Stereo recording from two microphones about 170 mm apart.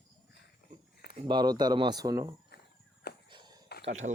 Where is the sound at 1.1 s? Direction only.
25° right (ahead or behind).